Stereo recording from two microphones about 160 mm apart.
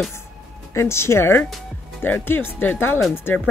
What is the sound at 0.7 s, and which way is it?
Speech, 15° left (ahead or behind).